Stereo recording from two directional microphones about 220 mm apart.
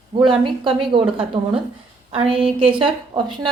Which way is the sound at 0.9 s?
20° right (ahead or behind).